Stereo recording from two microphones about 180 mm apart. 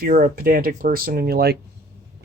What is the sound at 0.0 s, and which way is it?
Speech, 50° right (ahead or behind).